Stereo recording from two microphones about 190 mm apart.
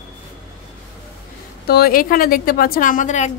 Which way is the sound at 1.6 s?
55° left (ahead or behind).